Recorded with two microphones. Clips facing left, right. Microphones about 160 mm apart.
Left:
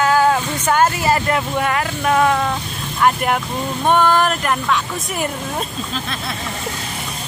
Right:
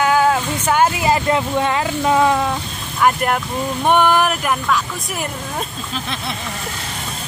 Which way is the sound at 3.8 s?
15° right (ahead or behind).